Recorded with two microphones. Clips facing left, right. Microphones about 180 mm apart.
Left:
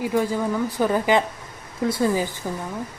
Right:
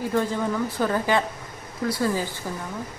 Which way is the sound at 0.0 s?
10° left (ahead or behind).